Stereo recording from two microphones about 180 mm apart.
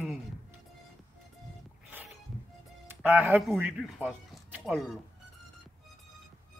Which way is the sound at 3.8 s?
Centre (ahead or behind).